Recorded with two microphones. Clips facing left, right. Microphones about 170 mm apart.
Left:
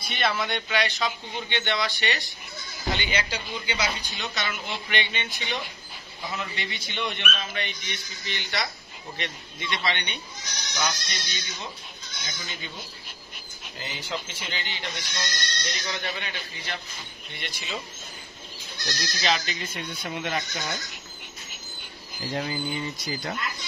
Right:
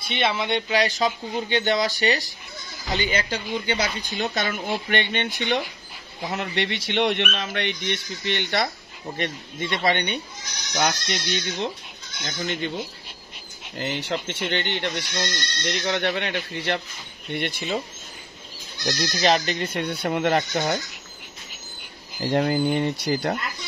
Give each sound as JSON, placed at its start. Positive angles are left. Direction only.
{"t": 0.0, "sound": "a woman's voice", "side_deg": -25}
{"t": 6.3, "sound": "speech", "side_deg": -75}
{"t": 9.1, "sound": "a woman's voice", "side_deg": -45}
{"t": 10.9, "sound": "speech", "side_deg": -70}
{"t": 18.9, "sound": "speech", "side_deg": -50}
{"t": 22.2, "sound": "speech", "side_deg": -60}